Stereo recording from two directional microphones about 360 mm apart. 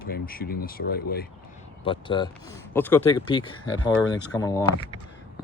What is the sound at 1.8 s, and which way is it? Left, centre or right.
Speech, centre.